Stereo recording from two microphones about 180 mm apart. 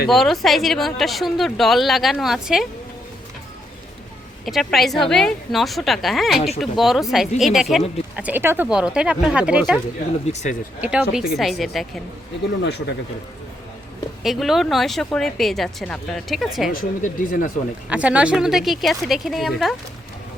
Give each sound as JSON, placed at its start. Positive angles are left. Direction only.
{"t": 0.1, "sound": "a woman's voice", "side_deg": 0}
{"t": 4.4, "sound": "a woman's voice", "side_deg": 0}
{"t": 10.2, "sound": "speech", "side_deg": 40}
{"t": 10.8, "sound": "a woman's voice", "side_deg": -5}
{"t": 12.6, "sound": "speech", "side_deg": 70}
{"t": 14.3, "sound": "a woman's voice", "side_deg": 0}
{"t": 16.7, "sound": "speech", "side_deg": 50}
{"t": 17.8, "sound": "a woman's voice", "side_deg": -5}